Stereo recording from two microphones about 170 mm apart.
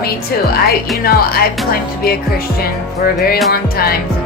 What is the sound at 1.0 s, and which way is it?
Speech, 60° left (ahead or behind).